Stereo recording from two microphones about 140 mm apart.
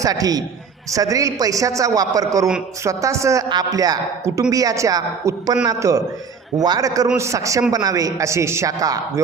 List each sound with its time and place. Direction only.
0.0 s a woman's voice: 25° right (ahead or behind)